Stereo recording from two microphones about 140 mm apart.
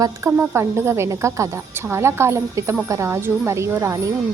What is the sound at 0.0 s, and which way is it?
A woman's voice, 20° right (ahead or behind).